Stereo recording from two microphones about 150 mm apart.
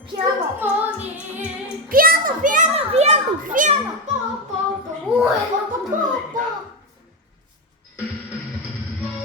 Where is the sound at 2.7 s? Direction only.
45° right (ahead or behind).